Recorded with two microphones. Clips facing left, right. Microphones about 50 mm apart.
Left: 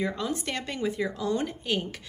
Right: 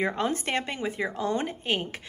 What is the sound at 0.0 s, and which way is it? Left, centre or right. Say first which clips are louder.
Speech: right 3 dB; right.